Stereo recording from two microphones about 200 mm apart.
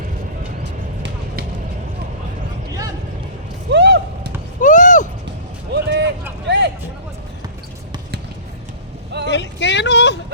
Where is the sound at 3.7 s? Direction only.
60° right (ahead or behind).